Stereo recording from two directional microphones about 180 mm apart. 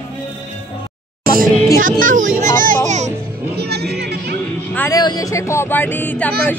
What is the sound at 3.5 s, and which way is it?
Music, 65° right (ahead or behind).